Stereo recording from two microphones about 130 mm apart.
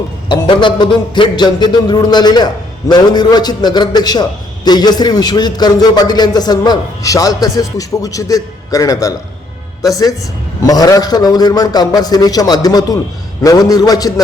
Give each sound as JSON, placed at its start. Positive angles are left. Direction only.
{"t": 0.3, "sound": "a man's voice", "side_deg": 40}